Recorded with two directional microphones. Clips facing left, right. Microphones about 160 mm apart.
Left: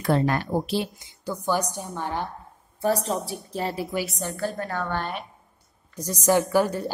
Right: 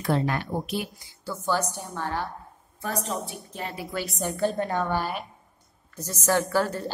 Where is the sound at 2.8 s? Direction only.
35° left (ahead or behind).